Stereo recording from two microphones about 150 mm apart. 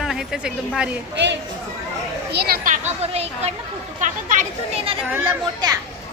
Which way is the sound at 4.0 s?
60° right (ahead or behind).